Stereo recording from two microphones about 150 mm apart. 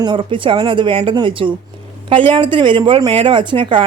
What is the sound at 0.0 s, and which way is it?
A woman's voice, 35° right (ahead or behind).